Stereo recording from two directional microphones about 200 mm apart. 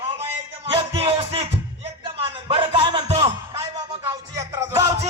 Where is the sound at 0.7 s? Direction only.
25° right (ahead or behind).